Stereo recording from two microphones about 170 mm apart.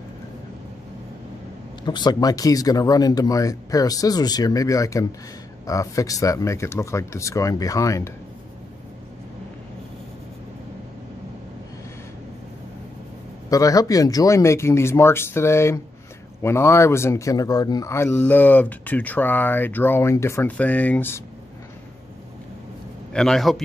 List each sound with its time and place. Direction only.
1.9 s speech: 25° left (ahead or behind)
13.5 s speech: 20° left (ahead or behind)
23.1 s a man's voice: 5° left (ahead or behind)